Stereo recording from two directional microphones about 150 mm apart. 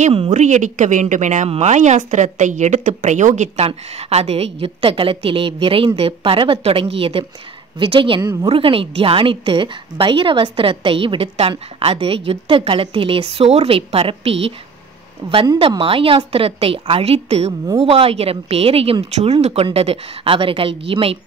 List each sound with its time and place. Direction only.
0.0 s a woman's voice: 40° right (ahead or behind)
0.3 s a woman's voice: 55° right (ahead or behind); by 8.2 s 35° right (ahead or behind)
8.2 s speech: 25° right (ahead or behind)
8.5 s a woman's voice: 35° right (ahead or behind)